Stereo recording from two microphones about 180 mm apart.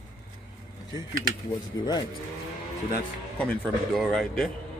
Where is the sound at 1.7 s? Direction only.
20° left (ahead or behind).